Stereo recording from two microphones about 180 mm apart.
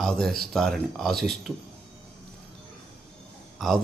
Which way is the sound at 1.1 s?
60° right (ahead or behind).